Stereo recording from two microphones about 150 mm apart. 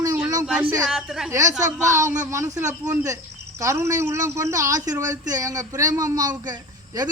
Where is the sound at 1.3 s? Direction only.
20° right (ahead or behind).